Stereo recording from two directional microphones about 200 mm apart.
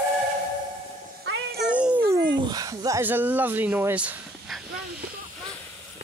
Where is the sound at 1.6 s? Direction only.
5° right (ahead or behind).